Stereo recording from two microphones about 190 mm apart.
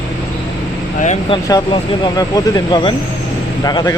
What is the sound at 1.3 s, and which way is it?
Speech, 20° left (ahead or behind).